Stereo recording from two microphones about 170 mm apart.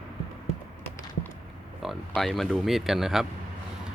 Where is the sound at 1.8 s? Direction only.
Centre (ahead or behind).